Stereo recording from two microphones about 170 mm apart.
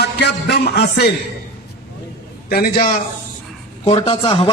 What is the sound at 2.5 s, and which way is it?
Speech, 65° left (ahead or behind).